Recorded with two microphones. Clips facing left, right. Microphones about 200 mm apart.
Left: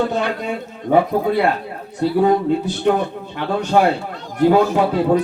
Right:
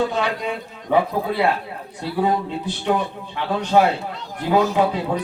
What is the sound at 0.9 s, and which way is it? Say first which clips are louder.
Speech: left 4 dB; 45° left (ahead or behind).